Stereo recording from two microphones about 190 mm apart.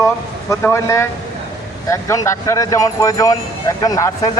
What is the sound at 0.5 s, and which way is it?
Speech, 15° left (ahead or behind).